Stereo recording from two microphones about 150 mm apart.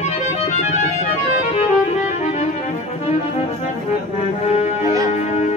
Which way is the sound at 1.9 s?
50° left (ahead or behind).